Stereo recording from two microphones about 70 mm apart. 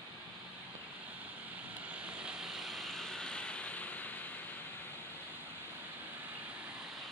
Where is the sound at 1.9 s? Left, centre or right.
Centre; by 4.2 s left.